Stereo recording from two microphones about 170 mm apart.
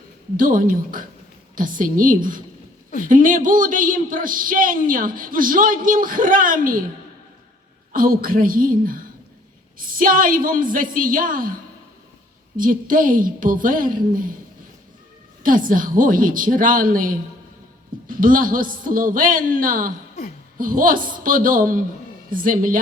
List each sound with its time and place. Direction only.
0.3 s speech: 55° right (ahead or behind)
7.9 s a woman's voice: 55° right (ahead or behind)
12.5 s speech: 55° right (ahead or behind)
15.4 s speech: 55° right (ahead or behind)
18.2 s a woman's voice: 55° right (ahead or behind)